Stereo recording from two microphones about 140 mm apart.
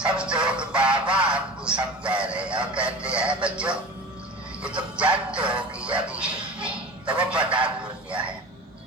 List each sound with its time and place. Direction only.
0.0 s music: 5° right (ahead or behind)
4.6 s speech: 10° right (ahead or behind)
5.1 s music: 10° right (ahead or behind)
7.1 s a man's voice: 10° right (ahead or behind)